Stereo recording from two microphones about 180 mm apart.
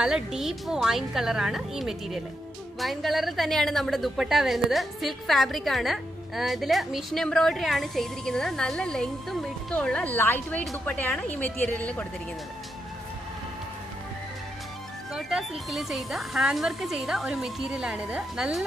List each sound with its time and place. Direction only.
0.0 s a woman's voice: 5° right (ahead or behind)
15.1 s a woman's voice: centre (ahead or behind)